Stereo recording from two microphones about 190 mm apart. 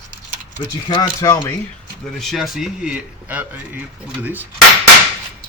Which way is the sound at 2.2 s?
Centre (ahead or behind).